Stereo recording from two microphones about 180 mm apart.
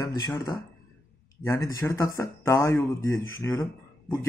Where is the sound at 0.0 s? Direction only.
20° left (ahead or behind).